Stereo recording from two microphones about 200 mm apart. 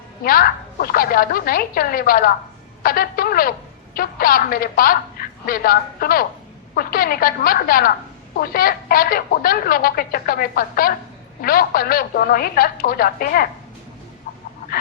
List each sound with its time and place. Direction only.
0.3 s speech: 45° left (ahead or behind)